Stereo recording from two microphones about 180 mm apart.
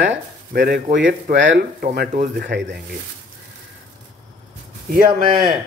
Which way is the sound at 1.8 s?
55° right (ahead or behind).